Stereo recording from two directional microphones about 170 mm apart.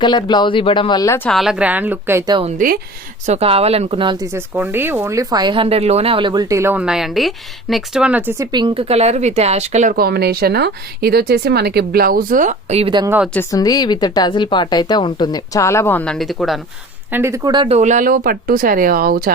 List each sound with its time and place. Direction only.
0.0 s a woman's voice: 25° left (ahead or behind)
1.3 s a woman's voice: centre (ahead or behind)
2.6 s speech: 55° right (ahead or behind)
3.2 s speech: 35° right (ahead or behind); by 8.4 s 10° right (ahead or behind)
8.5 s speech: 30° right (ahead or behind)
13.1 s a woman's voice: 10° right (ahead or behind)
13.5 s a woman's voice: 20° left (ahead or behind); by 16.6 s centre (ahead or behind)
17.1 s speech: 15° right (ahead or behind)
17.7 s speech: 45° right (ahead or behind)